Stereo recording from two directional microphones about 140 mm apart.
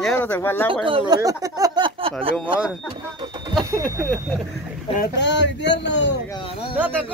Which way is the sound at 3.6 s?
25° right (ahead or behind).